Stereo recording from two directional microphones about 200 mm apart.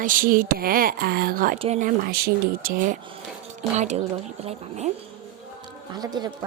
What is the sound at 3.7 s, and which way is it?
Speech, 35° right (ahead or behind).